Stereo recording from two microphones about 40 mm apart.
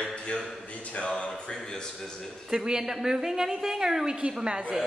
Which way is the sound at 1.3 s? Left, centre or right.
Centre.